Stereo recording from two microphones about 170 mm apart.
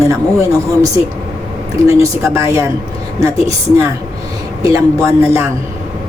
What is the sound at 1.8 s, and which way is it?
A man's voice, 15° right (ahead or behind).